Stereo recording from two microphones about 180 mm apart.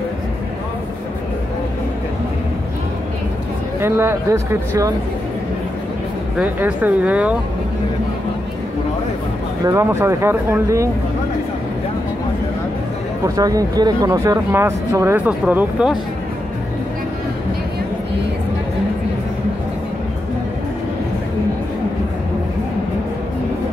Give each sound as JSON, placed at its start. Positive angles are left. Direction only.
{"t": 3.8, "sound": "speech", "side_deg": -15}
{"t": 6.3, "sound": "speech", "side_deg": -10}
{"t": 9.7, "sound": "speech", "side_deg": -15}
{"t": 13.2, "sound": "speech", "side_deg": -20}